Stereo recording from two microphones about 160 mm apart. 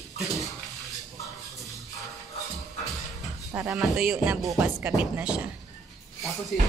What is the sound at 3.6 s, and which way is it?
A woman's voice, 5° right (ahead or behind).